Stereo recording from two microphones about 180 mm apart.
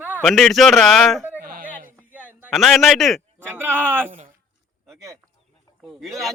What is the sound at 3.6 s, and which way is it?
Speech, 10° right (ahead or behind).